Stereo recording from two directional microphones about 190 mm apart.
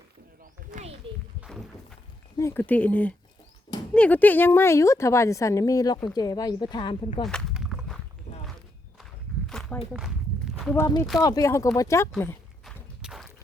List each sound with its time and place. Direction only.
0.7 s a sound: 40° right (ahead or behind)
1.4 s a sound: centre (ahead or behind)
2.4 s a woman's voice: 10° left (ahead or behind)
7.2 s walk: centre (ahead or behind)
8.3 s walk: 40° left (ahead or behind)
9.5 s walk: 5° left (ahead or behind)
10.8 s a woman's voice: 15° left (ahead or behind)
12.6 s walk: centre (ahead or behind)